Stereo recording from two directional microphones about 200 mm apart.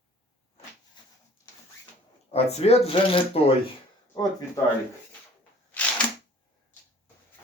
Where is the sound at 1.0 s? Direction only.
20° left (ahead or behind).